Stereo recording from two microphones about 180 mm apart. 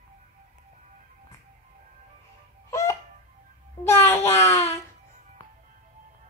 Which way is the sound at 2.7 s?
15° left (ahead or behind).